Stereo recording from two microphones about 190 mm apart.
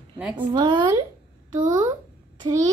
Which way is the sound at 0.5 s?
25° right (ahead or behind).